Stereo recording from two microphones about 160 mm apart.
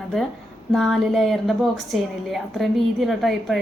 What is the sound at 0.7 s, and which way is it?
A woman's voice, centre (ahead or behind).